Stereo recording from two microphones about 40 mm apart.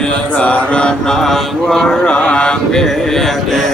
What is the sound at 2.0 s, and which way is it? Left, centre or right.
Speech, left.